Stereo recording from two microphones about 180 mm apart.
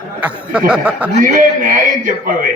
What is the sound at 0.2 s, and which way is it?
Speech, 5° right (ahead or behind).